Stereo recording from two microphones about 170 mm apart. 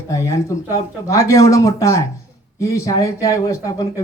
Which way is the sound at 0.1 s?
20° left (ahead or behind).